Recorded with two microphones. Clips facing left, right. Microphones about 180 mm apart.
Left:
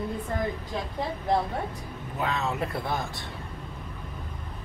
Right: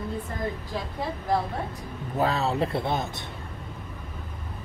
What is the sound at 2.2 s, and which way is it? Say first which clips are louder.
Speech: right 4 dB; 35° right (ahead or behind).